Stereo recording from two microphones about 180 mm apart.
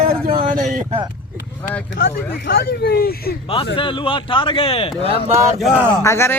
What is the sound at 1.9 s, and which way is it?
Speech, 90° left.